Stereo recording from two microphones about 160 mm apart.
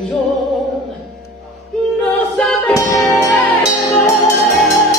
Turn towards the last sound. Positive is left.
turn(degrees=20)  # may be behind; listen again after turning